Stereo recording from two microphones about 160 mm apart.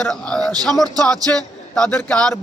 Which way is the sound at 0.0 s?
5° left (ahead or behind).